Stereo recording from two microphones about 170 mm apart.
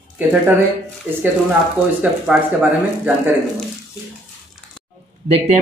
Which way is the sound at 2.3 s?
10° right (ahead or behind).